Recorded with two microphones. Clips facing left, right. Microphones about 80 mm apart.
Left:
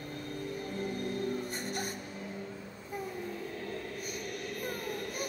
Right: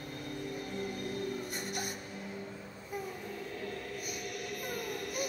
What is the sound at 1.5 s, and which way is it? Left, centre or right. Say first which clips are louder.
Music: left 2 dB; left.